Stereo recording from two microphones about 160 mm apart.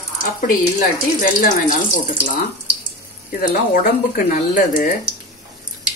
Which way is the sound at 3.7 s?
60° left (ahead or behind).